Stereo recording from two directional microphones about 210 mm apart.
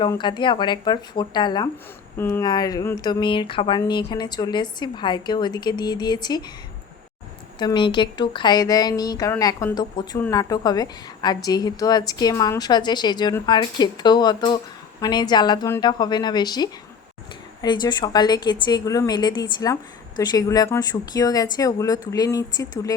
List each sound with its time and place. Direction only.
0.0 s speech: 20° left (ahead or behind)
7.6 s a woman's voice: 20° left (ahead or behind)